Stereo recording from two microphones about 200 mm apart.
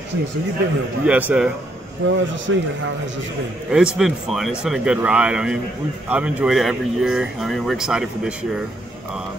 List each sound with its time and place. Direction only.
1.0 s speech: 5° right (ahead or behind)
2.0 s a man's voice: 65° right (ahead or behind)
3.7 s speech: 5° right (ahead or behind)